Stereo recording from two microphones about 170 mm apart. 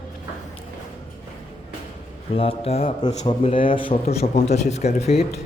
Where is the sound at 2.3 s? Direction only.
35° left (ahead or behind).